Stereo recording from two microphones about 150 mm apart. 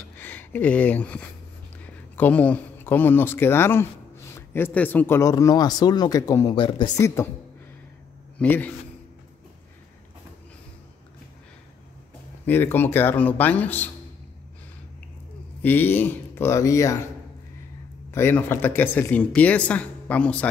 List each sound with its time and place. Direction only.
0.2 s speech: 10° left (ahead or behind)
6.5 s speech: 35° left (ahead or behind)
8.4 s speech: 10° left (ahead or behind)
12.4 s speech: 15° left (ahead or behind)
15.6 s speech: 10° left (ahead or behind)
18.1 s speech: 15° left (ahead or behind)